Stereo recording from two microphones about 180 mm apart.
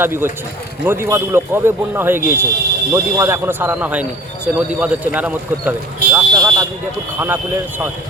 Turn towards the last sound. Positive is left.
turn(degrees=-10)  # may be behind; listen again after turning